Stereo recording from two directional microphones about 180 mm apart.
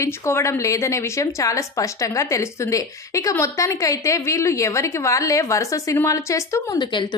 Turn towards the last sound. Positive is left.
turn(degrees=20)  # may be behind; listen again after turning